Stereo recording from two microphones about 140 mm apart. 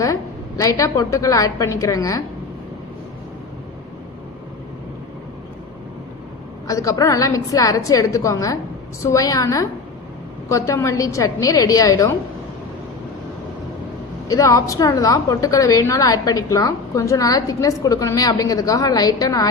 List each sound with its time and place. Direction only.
0.0 s a woman's voice: 25° left (ahead or behind)
6.7 s a woman's voice: 25° left (ahead or behind)
14.3 s a woman's voice: 25° left (ahead or behind)